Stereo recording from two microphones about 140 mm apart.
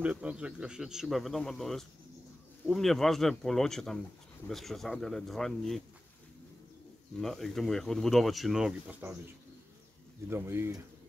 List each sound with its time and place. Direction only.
0.0 s speech: 10° right (ahead or behind)
7.2 s speech: centre (ahead or behind)
10.3 s speech: 15° right (ahead or behind)